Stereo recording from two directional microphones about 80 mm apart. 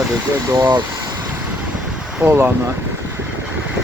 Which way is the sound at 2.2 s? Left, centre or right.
Right.